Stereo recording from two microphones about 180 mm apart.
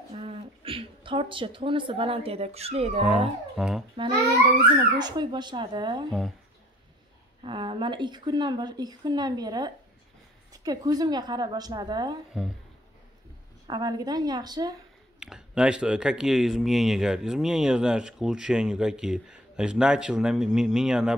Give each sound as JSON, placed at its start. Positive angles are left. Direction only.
{"t": 0.1, "sound": "speech", "side_deg": -30}
{"t": 3.5, "sound": "speech", "side_deg": 0}
{"t": 3.9, "sound": "a child's voice", "side_deg": -30}
{"t": 7.4, "sound": "speech", "side_deg": -30}
{"t": 13.7, "sound": "speech", "side_deg": -25}
{"t": 15.1, "sound": "speech", "side_deg": -5}